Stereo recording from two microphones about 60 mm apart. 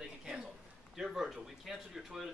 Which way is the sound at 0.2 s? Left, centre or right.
Centre.